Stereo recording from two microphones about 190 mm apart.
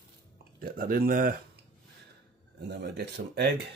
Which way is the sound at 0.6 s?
50° right (ahead or behind).